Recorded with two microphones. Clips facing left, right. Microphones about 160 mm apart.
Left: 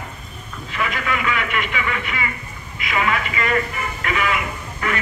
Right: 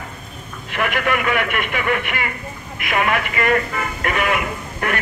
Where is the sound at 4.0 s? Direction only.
50° right (ahead or behind).